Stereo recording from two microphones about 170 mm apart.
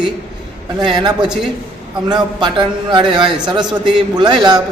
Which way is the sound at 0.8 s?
25° right (ahead or behind).